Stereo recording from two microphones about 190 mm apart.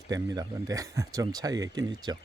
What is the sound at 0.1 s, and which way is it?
Speech, 20° right (ahead or behind).